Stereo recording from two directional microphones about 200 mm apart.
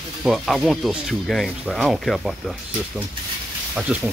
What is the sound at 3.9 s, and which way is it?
Speech, 5° right (ahead or behind).